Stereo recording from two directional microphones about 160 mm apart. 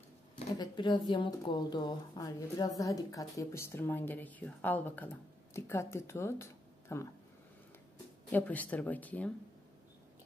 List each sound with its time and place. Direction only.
0.6 s speech: 30° left (ahead or behind)
8.3 s speech: 10° left (ahead or behind)